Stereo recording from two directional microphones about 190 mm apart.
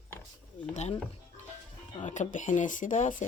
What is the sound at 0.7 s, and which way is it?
Speech, 35° left (ahead or behind).